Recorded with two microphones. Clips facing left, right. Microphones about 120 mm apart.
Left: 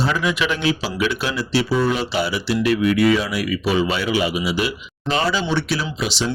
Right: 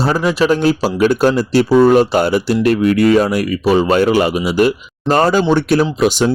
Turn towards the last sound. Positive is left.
turn(degrees=-50)  # may be behind; listen again after turning